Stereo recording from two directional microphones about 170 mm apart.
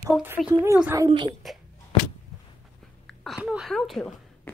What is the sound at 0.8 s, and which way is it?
Speech, 20° right (ahead or behind).